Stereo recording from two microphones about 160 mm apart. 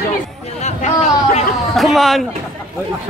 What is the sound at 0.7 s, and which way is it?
Speech, 45° left (ahead or behind).